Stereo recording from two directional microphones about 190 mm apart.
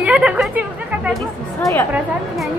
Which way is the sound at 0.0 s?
5° right (ahead or behind).